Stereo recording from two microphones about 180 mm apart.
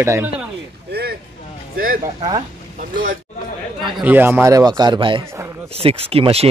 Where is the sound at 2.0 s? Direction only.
20° right (ahead or behind).